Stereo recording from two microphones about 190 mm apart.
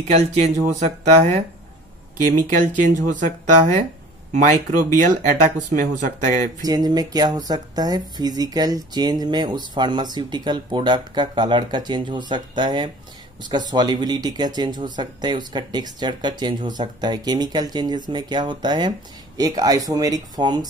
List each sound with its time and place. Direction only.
0.1 s speech: 35° right (ahead or behind)
6.6 s speech: 20° right (ahead or behind)